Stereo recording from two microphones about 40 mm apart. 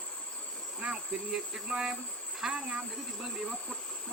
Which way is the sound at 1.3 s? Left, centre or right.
Centre.